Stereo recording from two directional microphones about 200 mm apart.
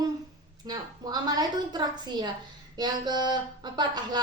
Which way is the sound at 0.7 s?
20° right (ahead or behind).